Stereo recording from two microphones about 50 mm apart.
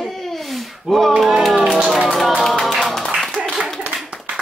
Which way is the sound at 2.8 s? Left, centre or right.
Centre.